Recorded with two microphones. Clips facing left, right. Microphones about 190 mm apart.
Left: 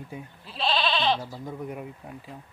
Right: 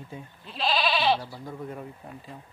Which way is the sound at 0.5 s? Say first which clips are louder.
Even; centre (ahead or behind).